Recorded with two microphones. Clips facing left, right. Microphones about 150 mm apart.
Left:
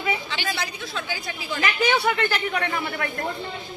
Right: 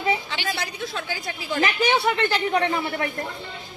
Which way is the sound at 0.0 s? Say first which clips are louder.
Right 2 dB; 35° right (ahead or behind).